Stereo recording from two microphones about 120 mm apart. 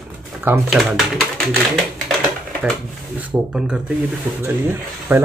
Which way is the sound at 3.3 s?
5° right (ahead or behind).